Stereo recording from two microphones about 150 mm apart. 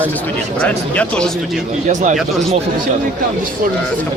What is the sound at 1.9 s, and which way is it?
Speech, 55° right (ahead or behind).